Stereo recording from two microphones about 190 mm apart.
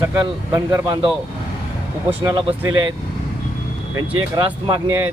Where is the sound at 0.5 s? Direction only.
20° right (ahead or behind).